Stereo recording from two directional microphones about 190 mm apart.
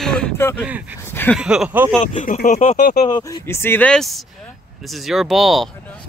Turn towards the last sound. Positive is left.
turn(degrees=0)  # may be behind; listen again after turning